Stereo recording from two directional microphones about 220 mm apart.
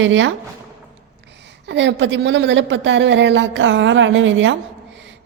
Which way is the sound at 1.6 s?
55° right (ahead or behind).